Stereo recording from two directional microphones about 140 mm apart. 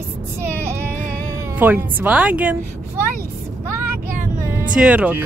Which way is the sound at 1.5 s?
15° right (ahead or behind).